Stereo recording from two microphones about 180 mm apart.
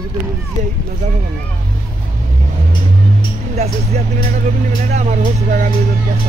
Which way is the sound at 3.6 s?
40° right (ahead or behind).